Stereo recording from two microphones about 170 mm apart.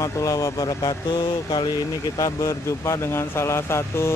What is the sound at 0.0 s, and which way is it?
Speech, 20° left (ahead or behind).